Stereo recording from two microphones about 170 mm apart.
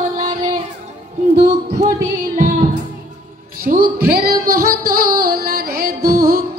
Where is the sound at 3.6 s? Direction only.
60° right (ahead or behind).